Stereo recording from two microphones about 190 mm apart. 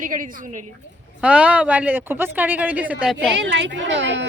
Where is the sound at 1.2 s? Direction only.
5° right (ahead or behind).